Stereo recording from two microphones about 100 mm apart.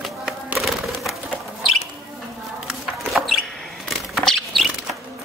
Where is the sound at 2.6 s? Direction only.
Centre (ahead or behind).